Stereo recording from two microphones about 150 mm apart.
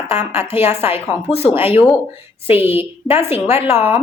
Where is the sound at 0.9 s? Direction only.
40° left (ahead or behind).